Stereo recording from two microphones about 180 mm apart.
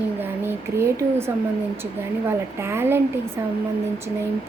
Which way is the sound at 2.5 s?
15° right (ahead or behind).